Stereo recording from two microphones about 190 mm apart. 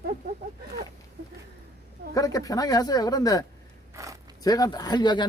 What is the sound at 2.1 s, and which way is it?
Speech, 20° left (ahead or behind).